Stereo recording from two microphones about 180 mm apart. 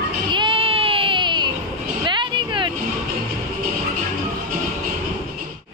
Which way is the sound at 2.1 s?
25° right (ahead or behind).